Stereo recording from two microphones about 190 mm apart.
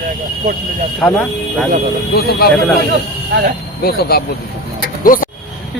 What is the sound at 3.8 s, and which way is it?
Speech, 55° left (ahead or behind).